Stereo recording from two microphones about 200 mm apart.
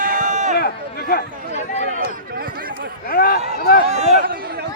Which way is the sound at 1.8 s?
55° right (ahead or behind).